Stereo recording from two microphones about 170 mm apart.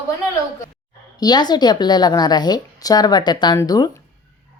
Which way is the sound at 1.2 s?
25° left (ahead or behind).